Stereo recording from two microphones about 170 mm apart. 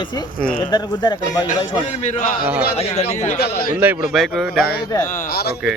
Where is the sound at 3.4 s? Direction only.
65° left (ahead or behind).